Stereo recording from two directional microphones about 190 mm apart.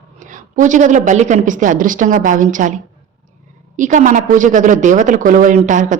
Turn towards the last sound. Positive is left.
turn(degrees=-40)  # may be behind; listen again after turning